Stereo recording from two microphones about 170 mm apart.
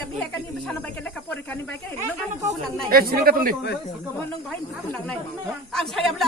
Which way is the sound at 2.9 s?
60° right (ahead or behind).